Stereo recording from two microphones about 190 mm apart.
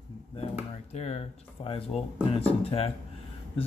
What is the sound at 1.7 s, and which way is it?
A man's voice, 30° left (ahead or behind).